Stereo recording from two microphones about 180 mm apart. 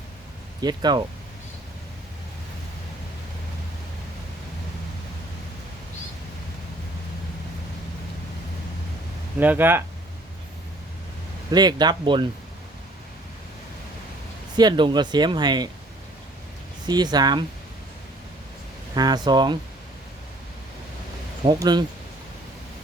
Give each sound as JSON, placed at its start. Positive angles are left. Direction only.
{"t": 0.6, "sound": "speech", "side_deg": -25}
{"t": 9.4, "sound": "speech", "side_deg": -10}
{"t": 11.5, "sound": "speech", "side_deg": -25}
{"t": 14.5, "sound": "speech", "side_deg": -25}
{"t": 16.8, "sound": "speech", "side_deg": -25}
{"t": 18.9, "sound": "speech", "side_deg": -20}
{"t": 21.4, "sound": "speech", "side_deg": -25}